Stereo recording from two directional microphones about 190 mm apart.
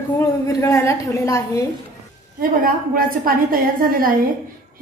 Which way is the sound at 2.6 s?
50° right (ahead or behind).